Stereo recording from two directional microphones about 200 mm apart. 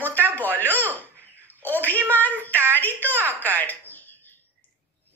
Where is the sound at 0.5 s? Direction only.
10° left (ahead or behind).